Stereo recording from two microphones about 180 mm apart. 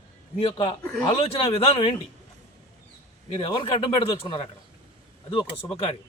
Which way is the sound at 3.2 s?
30° left (ahead or behind).